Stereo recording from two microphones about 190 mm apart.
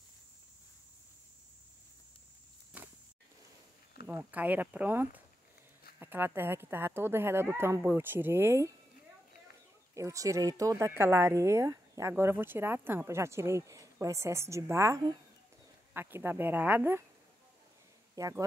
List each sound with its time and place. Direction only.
4.1 s speech: 10° right (ahead or behind)
9.9 s speech: 15° right (ahead or behind)
18.1 s speech: 15° right (ahead or behind)